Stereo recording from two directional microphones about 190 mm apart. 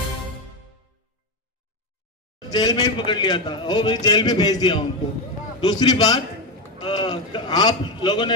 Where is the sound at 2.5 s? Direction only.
20° left (ahead or behind).